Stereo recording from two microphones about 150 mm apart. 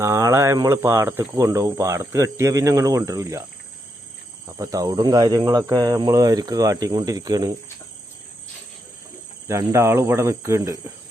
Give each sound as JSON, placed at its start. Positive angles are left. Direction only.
{"t": 0.0, "sound": "speech", "side_deg": -20}
{"t": 4.4, "sound": "speech", "side_deg": -20}
{"t": 9.5, "sound": "speech", "side_deg": -20}